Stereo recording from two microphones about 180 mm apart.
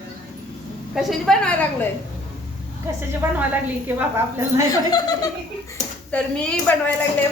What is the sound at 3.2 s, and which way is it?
Speech, 10° right (ahead or behind).